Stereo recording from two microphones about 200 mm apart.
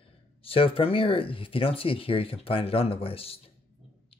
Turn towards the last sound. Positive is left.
turn(degrees=30)  # may be behind; listen again after turning